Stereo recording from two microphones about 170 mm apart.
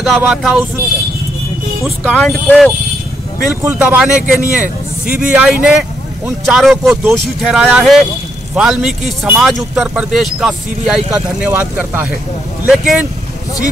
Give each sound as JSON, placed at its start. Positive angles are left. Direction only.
{"t": 0.2, "sound": "speech", "side_deg": -5}
{"t": 1.8, "sound": "speech", "side_deg": 5}
{"t": 3.6, "sound": "a man's voice", "side_deg": -10}